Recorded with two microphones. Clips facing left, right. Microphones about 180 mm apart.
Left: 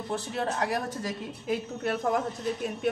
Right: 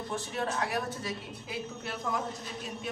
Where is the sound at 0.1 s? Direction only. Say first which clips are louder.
Left 4 dB; 40° left (ahead or behind).